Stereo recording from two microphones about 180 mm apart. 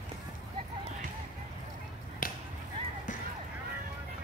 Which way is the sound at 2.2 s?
50° left (ahead or behind).